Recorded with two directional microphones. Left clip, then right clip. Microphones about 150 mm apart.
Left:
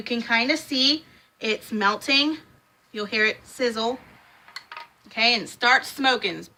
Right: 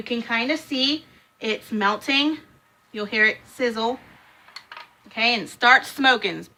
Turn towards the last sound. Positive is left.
turn(degrees=-30)  # may be behind; listen again after turning